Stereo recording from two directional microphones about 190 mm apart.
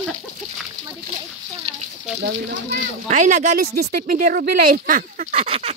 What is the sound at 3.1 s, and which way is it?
Speech, 40° right (ahead or behind).